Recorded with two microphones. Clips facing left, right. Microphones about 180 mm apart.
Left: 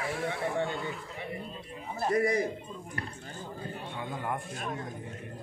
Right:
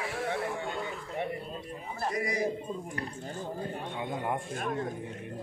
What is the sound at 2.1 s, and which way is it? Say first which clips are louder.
Speech: left 8 dB; 55° left (ahead or behind).